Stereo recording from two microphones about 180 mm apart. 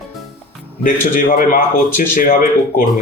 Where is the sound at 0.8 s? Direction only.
50° left (ahead or behind).